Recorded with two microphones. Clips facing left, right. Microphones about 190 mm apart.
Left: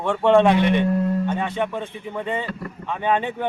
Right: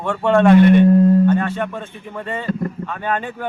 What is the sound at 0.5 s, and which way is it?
Speech, 50° right (ahead or behind).